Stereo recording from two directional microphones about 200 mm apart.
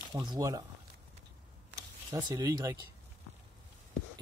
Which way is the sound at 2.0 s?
20° right (ahead or behind).